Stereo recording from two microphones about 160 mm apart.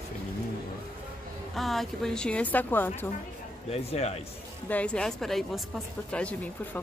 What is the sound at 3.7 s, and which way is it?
Speech, 40° left (ahead or behind).